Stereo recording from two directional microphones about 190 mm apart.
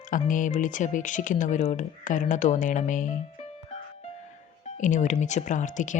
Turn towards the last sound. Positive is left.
turn(degrees=40)  # may be behind; listen again after turning